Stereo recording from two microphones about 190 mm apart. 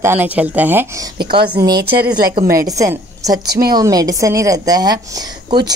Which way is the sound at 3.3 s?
55° right (ahead or behind).